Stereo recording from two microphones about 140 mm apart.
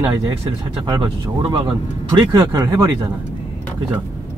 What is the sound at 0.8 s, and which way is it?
Speech, 40° right (ahead or behind).